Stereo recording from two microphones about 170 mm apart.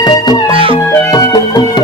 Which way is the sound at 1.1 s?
25° left (ahead or behind).